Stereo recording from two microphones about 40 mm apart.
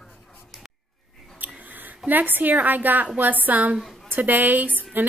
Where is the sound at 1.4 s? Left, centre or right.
Right.